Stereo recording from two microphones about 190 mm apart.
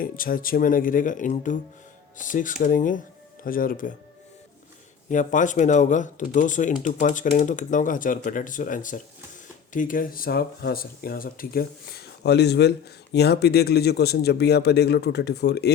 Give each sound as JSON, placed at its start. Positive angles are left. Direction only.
{"t": 0.0, "sound": "speech", "side_deg": 50}
{"t": 5.1, "sound": "speech", "side_deg": 40}